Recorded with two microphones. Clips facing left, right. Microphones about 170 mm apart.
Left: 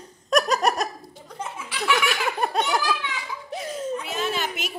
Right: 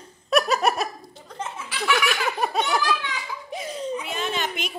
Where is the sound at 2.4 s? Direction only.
5° right (ahead or behind).